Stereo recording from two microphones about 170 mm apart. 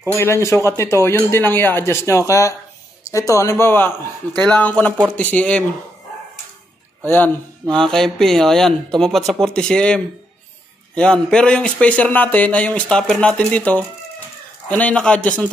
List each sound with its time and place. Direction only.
0.2 s speech: 15° left (ahead or behind)
7.7 s speech: 5° left (ahead or behind)